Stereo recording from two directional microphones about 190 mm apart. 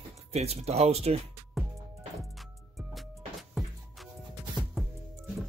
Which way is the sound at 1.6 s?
Centre (ahead or behind).